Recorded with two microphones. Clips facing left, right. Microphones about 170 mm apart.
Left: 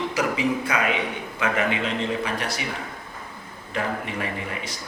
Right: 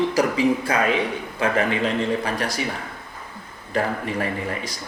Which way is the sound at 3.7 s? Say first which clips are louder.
Right 4 dB; 40° right (ahead or behind).